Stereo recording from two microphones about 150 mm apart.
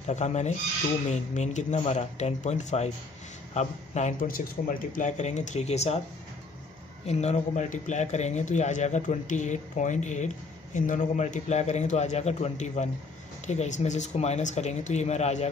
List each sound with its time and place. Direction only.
0.0 s a man's voice: 50° left (ahead or behind)
4.3 s a man's voice: 65° left (ahead or behind); by 5.9 s 45° left (ahead or behind)
7.1 s a man's voice: 45° left (ahead or behind)